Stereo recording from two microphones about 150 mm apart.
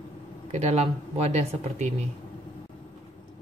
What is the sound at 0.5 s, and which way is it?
Speech, 45° right (ahead or behind).